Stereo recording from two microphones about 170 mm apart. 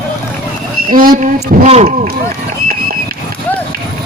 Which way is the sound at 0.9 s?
55° right (ahead or behind).